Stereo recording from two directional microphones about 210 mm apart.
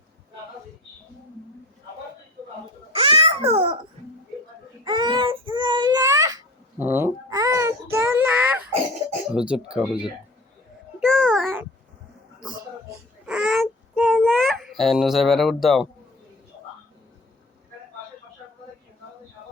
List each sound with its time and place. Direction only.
2.9 s babbling: 25° right (ahead or behind)
4.9 s babbling: 20° right (ahead or behind)
9.3 s speech: 5° right (ahead or behind)
11.0 s babbling: centre (ahead or behind)
13.2 s child singing: 5° right (ahead or behind)
14.2 s speech: 5° left (ahead or behind)